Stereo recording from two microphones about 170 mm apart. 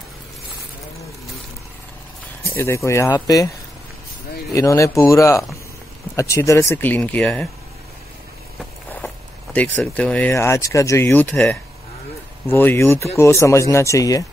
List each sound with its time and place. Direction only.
2.5 s speech: 15° left (ahead or behind)
4.6 s speech: 20° left (ahead or behind)
8.5 s speech: 5° left (ahead or behind)